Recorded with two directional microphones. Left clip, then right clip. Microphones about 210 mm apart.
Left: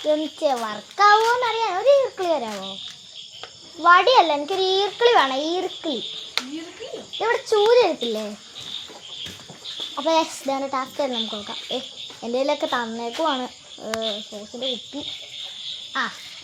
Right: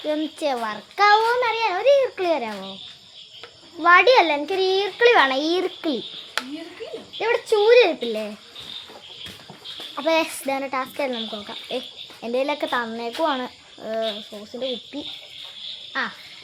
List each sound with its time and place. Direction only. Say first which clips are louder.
0.1 s a child's voice: left 3 dB; 10° right (ahead or behind)
3.8 s a child's voice: even; 15° right (ahead or behind)
7.2 s speech: even; 5° right (ahead or behind)
9.9 s speech: even; centre (ahead or behind)